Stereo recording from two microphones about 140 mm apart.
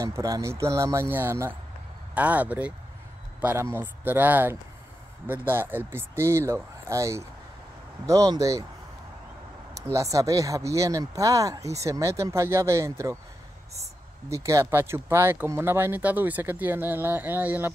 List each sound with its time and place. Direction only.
0.0 s speech: 25° right (ahead or behind)
9.9 s speech: 25° right (ahead or behind)
14.3 s speech: 20° right (ahead or behind)